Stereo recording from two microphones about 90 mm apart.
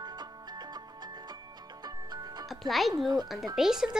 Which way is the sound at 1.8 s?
50° right (ahead or behind).